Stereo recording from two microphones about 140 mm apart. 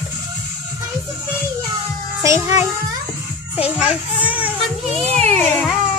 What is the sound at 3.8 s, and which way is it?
Speech, 10° right (ahead or behind).